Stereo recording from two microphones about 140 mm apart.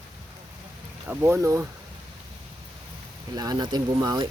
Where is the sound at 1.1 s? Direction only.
15° right (ahead or behind).